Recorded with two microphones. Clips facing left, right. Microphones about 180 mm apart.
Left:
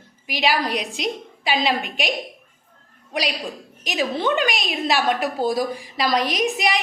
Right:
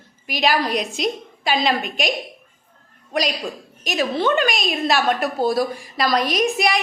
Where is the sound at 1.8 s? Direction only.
45° right (ahead or behind).